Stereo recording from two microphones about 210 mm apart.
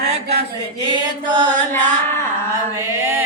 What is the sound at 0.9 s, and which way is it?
Chant, 20° right (ahead or behind).